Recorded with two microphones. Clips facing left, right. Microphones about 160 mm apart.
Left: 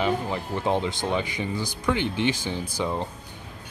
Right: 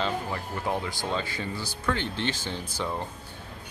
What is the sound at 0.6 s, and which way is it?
Speech, 25° left (ahead or behind).